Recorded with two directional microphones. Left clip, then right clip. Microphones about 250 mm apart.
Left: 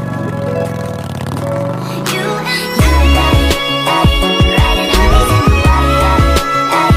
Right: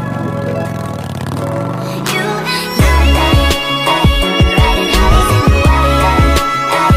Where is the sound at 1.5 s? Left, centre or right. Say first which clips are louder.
Left 3 dB; centre.